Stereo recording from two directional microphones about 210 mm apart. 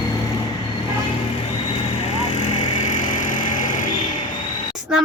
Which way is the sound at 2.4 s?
35° left (ahead or behind).